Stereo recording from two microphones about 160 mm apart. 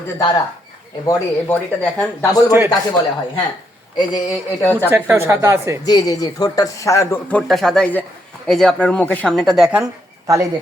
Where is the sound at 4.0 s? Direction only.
25° left (ahead or behind).